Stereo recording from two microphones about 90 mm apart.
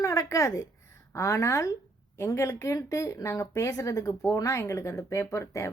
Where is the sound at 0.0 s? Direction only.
35° left (ahead or behind).